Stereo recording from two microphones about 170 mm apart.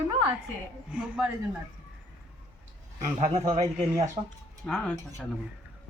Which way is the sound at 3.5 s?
20° right (ahead or behind).